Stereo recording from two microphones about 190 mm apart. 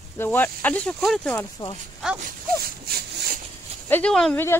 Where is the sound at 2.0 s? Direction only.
Centre (ahead or behind).